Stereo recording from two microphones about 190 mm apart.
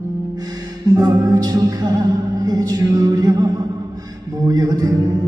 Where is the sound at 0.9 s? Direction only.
15° right (ahead or behind).